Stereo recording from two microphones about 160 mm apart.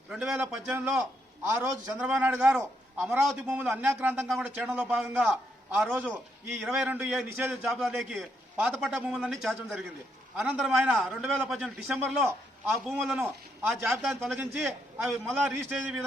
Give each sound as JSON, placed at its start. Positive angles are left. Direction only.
{"t": 0.1, "sound": "a man's voice", "side_deg": -5}
{"t": 13.2, "sound": "a man's voice", "side_deg": -15}